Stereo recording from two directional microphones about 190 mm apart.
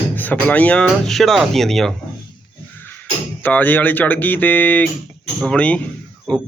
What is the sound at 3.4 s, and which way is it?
Speech, 10° left (ahead or behind).